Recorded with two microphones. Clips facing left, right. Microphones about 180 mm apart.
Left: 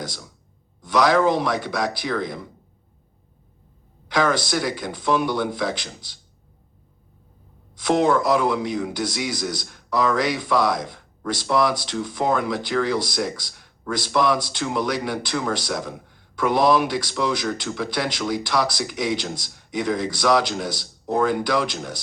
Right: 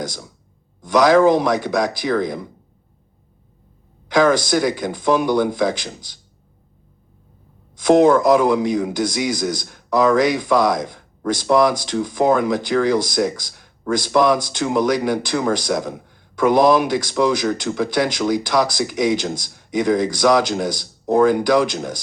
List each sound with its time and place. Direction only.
0.8 s a man's voice: 45° right (ahead or behind)
4.1 s a man's voice: 45° right (ahead or behind)
7.8 s a man's voice: 45° right (ahead or behind)